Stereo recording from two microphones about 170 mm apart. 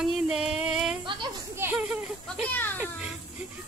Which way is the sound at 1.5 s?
15° right (ahead or behind).